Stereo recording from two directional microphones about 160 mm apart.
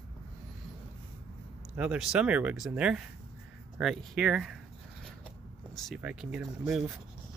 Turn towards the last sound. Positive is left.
turn(degrees=-5)  # may be behind; listen again after turning